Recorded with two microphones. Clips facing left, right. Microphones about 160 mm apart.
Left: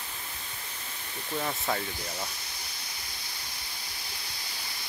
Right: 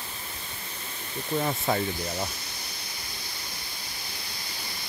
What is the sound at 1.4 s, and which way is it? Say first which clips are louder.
Speech: right 4 dB; 20° right (ahead or behind).